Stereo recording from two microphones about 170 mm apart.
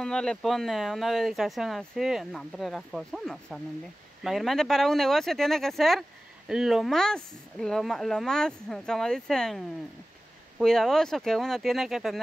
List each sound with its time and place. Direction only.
0.0 s speech: 5° left (ahead or behind)
10.6 s speech: centre (ahead or behind)